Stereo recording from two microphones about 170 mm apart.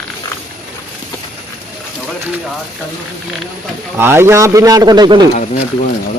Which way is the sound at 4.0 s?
15° right (ahead or behind).